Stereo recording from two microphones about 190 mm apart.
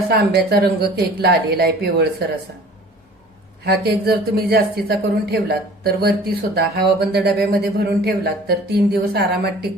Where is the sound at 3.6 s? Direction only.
60° right (ahead or behind).